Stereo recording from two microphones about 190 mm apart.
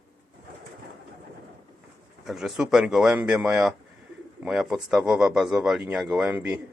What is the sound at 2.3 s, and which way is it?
Speech, centre (ahead or behind).